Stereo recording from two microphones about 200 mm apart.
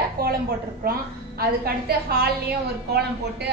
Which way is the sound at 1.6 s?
50° right (ahead or behind).